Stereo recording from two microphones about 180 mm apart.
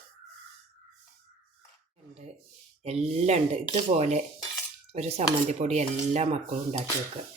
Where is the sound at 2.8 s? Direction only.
35° right (ahead or behind).